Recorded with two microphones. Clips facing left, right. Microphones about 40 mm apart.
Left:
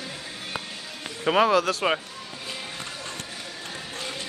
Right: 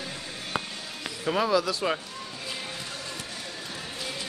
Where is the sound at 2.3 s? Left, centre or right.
Centre.